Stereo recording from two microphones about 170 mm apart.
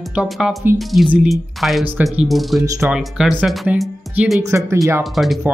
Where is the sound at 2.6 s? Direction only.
20° right (ahead or behind).